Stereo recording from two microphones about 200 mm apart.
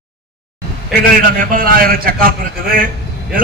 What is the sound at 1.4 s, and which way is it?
Speech, 45° right (ahead or behind).